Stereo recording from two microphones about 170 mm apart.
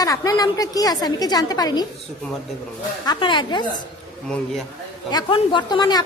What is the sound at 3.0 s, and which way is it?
Speech, 25° left (ahead or behind).